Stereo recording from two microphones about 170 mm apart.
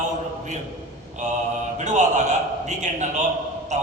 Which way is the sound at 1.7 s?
45° right (ahead or behind).